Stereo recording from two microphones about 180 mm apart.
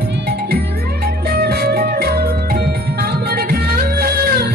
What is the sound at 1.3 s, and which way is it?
Music, 60° right (ahead or behind).